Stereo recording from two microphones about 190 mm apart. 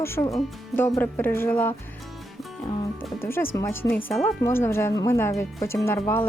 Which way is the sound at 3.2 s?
10° left (ahead or behind).